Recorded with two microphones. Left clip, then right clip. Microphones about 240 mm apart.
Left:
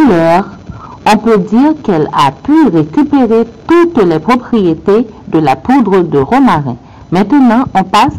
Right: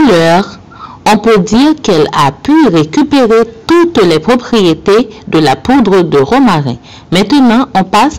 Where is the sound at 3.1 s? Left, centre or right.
Right.